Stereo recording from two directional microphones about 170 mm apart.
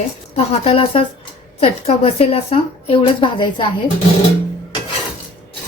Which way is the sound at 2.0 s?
35° left (ahead or behind).